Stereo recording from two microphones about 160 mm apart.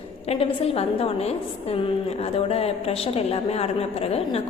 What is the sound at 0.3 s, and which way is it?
A woman's voice, 40° left (ahead or behind).